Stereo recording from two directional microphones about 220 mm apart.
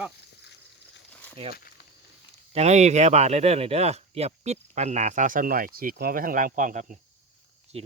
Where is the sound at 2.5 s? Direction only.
30° right (ahead or behind).